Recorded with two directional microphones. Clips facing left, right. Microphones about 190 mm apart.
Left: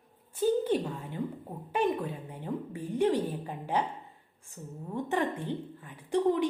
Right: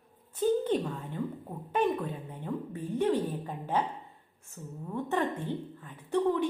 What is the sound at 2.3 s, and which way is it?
Speech, 15° left (ahead or behind).